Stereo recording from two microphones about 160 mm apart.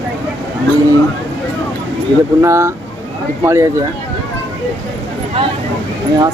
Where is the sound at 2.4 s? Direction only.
15° right (ahead or behind).